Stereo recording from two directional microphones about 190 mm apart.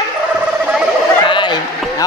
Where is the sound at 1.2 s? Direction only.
25° left (ahead or behind).